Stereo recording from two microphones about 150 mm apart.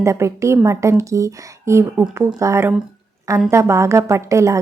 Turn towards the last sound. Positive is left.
turn(degrees=-20)  # may be behind; listen again after turning